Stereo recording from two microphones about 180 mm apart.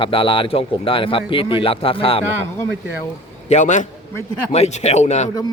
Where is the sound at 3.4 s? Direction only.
40° left (ahead or behind).